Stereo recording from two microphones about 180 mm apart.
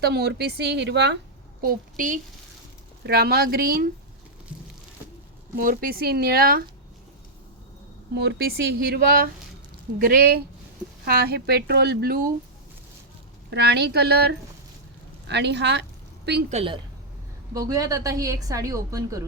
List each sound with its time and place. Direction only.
0.0 s speech: 60° right (ahead or behind)
1.6 s a woman's voice: 50° right (ahead or behind)
3.0 s speech: 60° right (ahead or behind)
5.5 s speech: 50° right (ahead or behind)
8.7 s speech: 55° right (ahead or behind)
13.5 s speech: 65° right (ahead or behind)
16.5 s a woman's voice: 30° right (ahead or behind)
17.5 s a woman's voice: 20° right (ahead or behind)